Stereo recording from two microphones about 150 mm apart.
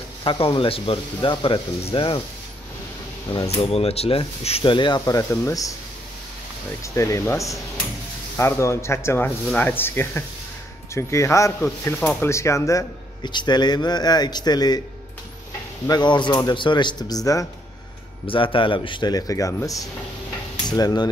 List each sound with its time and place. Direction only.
0.2 s speech: 35° left (ahead or behind)
3.3 s speech: 40° left (ahead or behind); by 5.8 s 20° left (ahead or behind)
6.8 s speech: 20° left (ahead or behind)
15.9 s speech: 30° left (ahead or behind)
18.2 s speech: 35° left (ahead or behind)